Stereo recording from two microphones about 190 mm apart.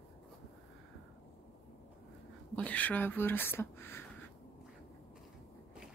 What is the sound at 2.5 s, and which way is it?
Speech, 10° left (ahead or behind).